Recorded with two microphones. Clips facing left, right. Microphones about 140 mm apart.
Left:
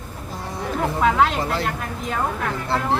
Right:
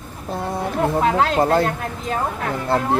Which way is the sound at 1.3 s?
45° right (ahead or behind).